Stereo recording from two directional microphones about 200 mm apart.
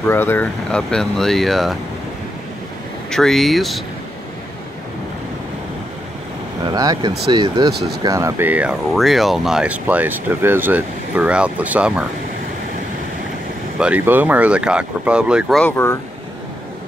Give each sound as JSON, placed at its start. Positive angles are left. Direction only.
{"t": 0.0, "sound": "speech", "side_deg": 10}
{"t": 3.1, "sound": "speech", "side_deg": 0}
{"t": 6.6, "sound": "speech", "side_deg": -20}
{"t": 13.7, "sound": "speech", "side_deg": -5}
{"t": 15.6, "sound": "speech", "side_deg": 10}